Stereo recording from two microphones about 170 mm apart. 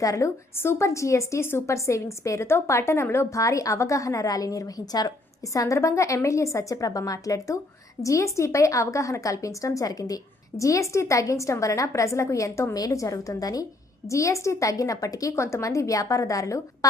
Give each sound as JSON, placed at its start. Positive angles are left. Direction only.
{"t": 0.0, "sound": "a woman's voice", "side_deg": 20}